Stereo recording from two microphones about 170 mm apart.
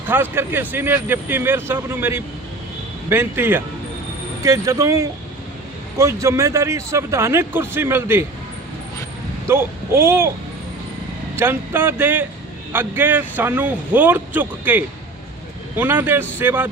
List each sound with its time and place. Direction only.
0.1 s speech: 10° right (ahead or behind)
9.5 s speech: 15° right (ahead or behind)
11.3 s speech: 10° right (ahead or behind)